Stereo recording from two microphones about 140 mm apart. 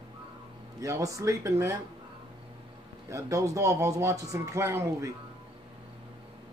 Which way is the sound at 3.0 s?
20° right (ahead or behind).